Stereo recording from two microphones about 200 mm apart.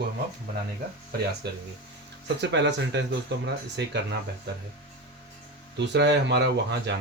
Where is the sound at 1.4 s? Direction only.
55° right (ahead or behind).